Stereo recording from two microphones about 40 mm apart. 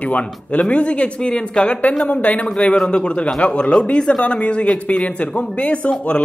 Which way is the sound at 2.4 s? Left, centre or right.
Left.